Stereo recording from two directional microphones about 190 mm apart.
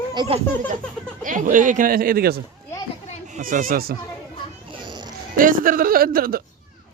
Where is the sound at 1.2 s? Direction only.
45° right (ahead or behind).